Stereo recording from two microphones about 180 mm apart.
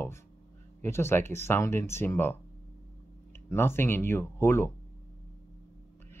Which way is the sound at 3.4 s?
15° left (ahead or behind).